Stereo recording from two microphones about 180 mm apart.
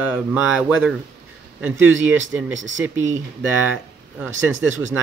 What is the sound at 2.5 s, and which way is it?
Speech, 90° right.